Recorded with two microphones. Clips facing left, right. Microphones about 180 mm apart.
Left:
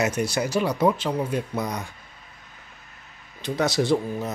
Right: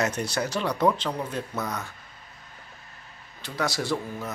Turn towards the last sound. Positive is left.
turn(degrees=20)  # may be behind; listen again after turning